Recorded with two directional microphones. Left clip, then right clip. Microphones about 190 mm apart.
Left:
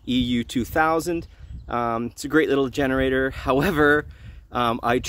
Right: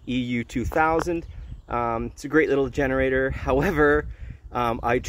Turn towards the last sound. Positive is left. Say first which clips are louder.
# left 2 dB
turn(degrees=35)  # may be behind; listen again after turning